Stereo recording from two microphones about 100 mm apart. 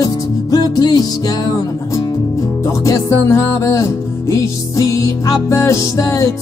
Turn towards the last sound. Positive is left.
turn(degrees=35)  # may be behind; listen again after turning